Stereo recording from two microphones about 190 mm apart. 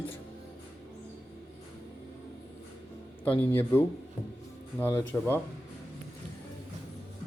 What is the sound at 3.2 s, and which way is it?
Speech, 10° left (ahead or behind).